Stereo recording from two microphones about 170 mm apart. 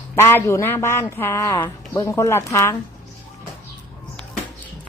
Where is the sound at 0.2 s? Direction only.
15° left (ahead or behind).